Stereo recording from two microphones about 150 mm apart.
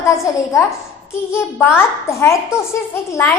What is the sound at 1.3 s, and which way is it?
A child's voice, 15° left (ahead or behind).